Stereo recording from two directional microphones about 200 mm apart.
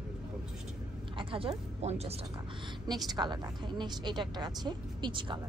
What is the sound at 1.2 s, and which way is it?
A woman's voice, 25° right (ahead or behind).